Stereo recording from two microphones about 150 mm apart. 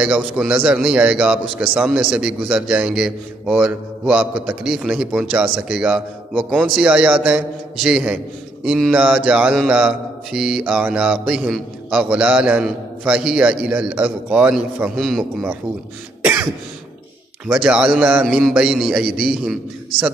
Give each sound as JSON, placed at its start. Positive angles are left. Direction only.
{"t": 0.0, "sound": "a man's voice", "side_deg": -5}
{"t": 17.6, "sound": "a man's voice", "side_deg": -5}
{"t": 18.2, "sound": "a man's voice", "side_deg": 0}